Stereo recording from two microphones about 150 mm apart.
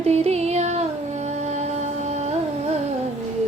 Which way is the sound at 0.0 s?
45° right (ahead or behind).